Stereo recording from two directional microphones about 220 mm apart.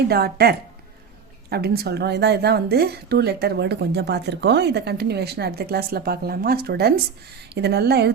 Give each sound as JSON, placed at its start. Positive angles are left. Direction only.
{"t": 0.1, "sound": "speech", "side_deg": -45}